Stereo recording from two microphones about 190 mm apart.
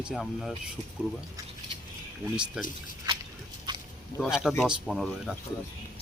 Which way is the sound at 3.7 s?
25° right (ahead or behind).